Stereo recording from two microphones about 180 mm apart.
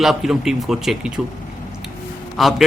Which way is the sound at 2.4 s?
Centre (ahead or behind).